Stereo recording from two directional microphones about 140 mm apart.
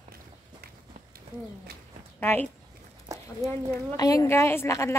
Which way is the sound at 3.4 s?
25° right (ahead or behind).